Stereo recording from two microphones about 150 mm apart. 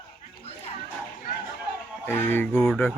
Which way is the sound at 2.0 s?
15° left (ahead or behind).